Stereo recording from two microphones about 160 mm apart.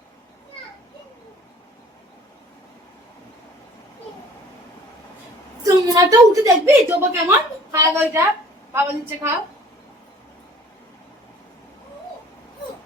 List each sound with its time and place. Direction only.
5.6 s a woman's voice: 20° right (ahead or behind)